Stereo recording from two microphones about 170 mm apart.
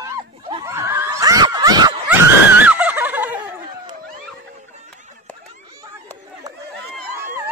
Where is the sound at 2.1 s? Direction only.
10° right (ahead or behind).